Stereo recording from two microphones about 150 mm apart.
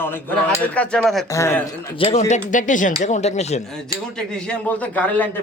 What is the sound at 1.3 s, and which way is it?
Speech, 15° left (ahead or behind).